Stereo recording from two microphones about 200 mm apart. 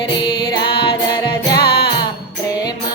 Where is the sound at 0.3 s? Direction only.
20° left (ahead or behind).